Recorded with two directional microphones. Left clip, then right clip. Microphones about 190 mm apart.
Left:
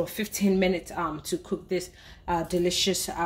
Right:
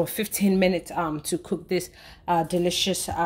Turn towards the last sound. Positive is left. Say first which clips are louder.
# right 1 dB
turn(degrees=-35)  # may be behind; listen again after turning